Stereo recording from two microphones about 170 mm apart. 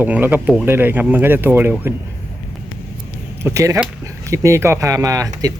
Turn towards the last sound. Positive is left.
turn(degrees=-20)  # may be behind; listen again after turning